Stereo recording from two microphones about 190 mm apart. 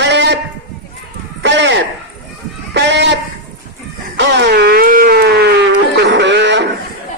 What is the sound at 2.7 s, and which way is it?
Sheep, 65° right (ahead or behind).